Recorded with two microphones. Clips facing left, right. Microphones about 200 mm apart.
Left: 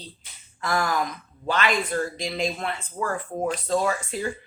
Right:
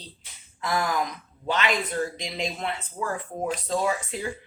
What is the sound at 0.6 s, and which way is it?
Speech, 15° right (ahead or behind).